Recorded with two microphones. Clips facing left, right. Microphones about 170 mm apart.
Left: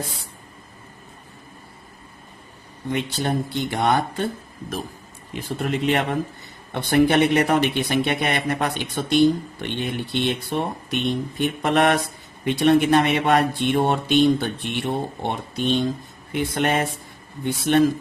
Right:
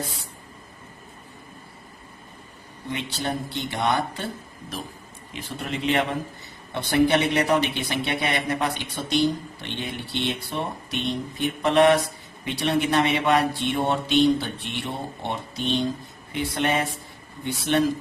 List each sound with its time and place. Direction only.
2.9 s speech: 50° left (ahead or behind)
5.3 s speech: 45° left (ahead or behind)